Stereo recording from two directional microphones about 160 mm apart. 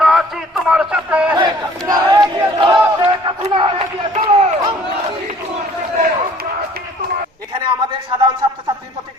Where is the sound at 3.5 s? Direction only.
30° right (ahead or behind).